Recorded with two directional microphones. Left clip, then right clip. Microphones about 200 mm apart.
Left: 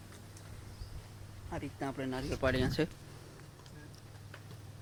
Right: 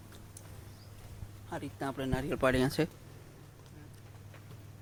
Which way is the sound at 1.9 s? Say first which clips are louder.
Right 5 dB; 30° right (ahead or behind).